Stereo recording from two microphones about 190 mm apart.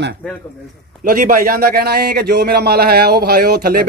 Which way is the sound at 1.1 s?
45° right (ahead or behind).